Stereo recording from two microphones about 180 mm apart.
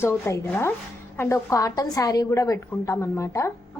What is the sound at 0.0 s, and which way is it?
A woman's voice, 15° left (ahead or behind).